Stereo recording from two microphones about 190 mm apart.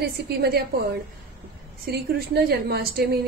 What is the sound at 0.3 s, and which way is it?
Speech, 55° right (ahead or behind).